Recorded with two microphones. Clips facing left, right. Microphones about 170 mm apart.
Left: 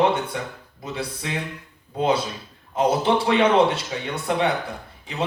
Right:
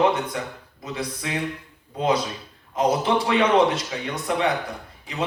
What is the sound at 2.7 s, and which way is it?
Speech, 30° left (ahead or behind).